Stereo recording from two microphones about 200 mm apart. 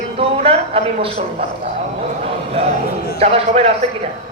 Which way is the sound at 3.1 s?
30° right (ahead or behind).